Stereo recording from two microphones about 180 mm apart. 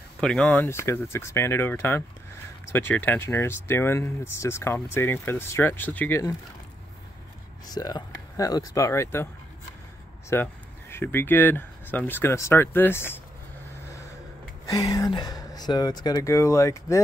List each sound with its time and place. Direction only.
0.2 s speech: 5° left (ahead or behind)
7.6 s speech: 20° left (ahead or behind)
10.3 s speech: 15° left (ahead or behind)
14.7 s speech: 20° left (ahead or behind)